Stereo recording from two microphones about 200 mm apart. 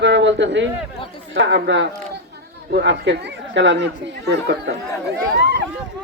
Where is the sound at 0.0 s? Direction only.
60° right (ahead or behind).